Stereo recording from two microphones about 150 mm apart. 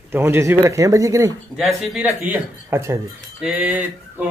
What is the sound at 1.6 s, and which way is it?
Speech, centre (ahead or behind).